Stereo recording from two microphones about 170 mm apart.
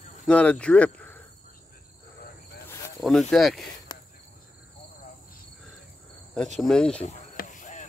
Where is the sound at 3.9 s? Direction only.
25° left (ahead or behind).